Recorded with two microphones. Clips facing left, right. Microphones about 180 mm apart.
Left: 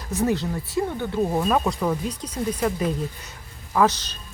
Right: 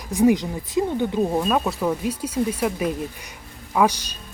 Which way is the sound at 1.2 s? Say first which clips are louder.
Even; centre (ahead or behind).